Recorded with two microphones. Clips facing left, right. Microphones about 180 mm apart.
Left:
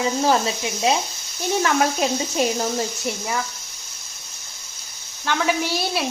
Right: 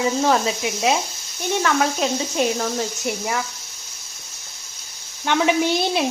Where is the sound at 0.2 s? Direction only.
Centre (ahead or behind).